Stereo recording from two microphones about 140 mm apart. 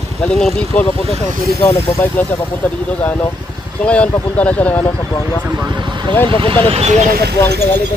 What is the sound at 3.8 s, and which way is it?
Speech, 10° left (ahead or behind).